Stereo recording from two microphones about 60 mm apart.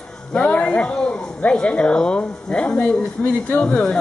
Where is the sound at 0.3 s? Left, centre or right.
Centre.